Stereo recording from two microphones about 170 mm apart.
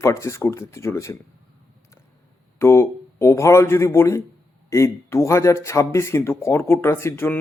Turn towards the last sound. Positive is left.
turn(degrees=15)  # may be behind; listen again after turning